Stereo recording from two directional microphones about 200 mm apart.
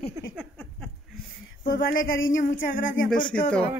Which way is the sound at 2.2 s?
70° left (ahead or behind).